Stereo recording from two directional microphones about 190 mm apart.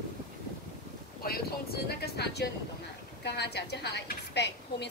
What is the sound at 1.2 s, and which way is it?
A woman's voice, 55° left (ahead or behind).